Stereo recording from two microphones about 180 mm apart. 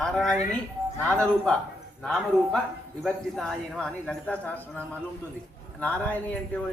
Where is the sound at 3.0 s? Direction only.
5° left (ahead or behind).